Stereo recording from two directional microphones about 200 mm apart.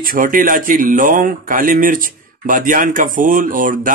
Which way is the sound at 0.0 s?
45° right (ahead or behind).